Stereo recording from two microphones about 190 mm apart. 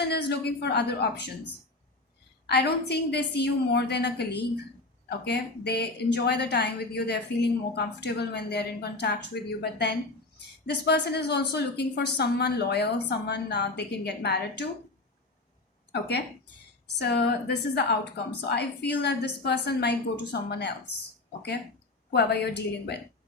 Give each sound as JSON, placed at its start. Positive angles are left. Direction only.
{"t": 0.1, "sound": "a woman's voice", "side_deg": 60}
{"t": 2.5, "sound": "a woman's voice", "side_deg": 60}
{"t": 15.9, "sound": "a woman's voice", "side_deg": 60}
{"t": 22.1, "sound": "a woman's voice", "side_deg": 60}